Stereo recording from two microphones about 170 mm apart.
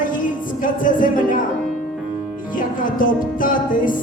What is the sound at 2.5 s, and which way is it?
Music, 55° left (ahead or behind).